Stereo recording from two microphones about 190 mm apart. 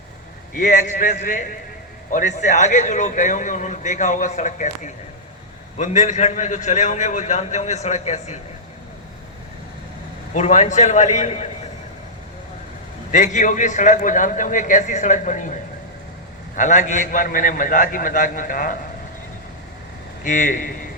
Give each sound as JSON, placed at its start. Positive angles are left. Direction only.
{"t": 0.5, "sound": "a man's voice", "side_deg": 40}
{"t": 10.3, "sound": "a man's voice", "side_deg": 35}
{"t": 13.1, "sound": "a man's voice", "side_deg": 40}
{"t": 16.6, "sound": "a man's voice", "side_deg": 40}
{"t": 20.2, "sound": "a man's voice", "side_deg": 45}